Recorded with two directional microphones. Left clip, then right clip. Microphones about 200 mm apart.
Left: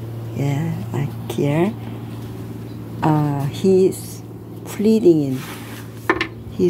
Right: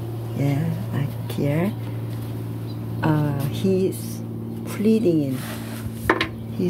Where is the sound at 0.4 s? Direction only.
30° left (ahead or behind).